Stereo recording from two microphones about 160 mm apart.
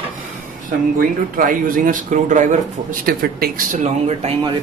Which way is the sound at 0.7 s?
60° right (ahead or behind).